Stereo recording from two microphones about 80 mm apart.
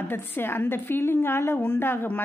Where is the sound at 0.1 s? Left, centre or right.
Left.